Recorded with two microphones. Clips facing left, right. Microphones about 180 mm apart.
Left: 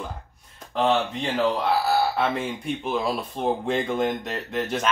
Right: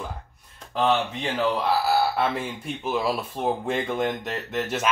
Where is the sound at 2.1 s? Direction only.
Centre (ahead or behind).